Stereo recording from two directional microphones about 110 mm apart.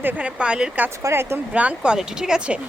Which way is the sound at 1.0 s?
25° right (ahead or behind).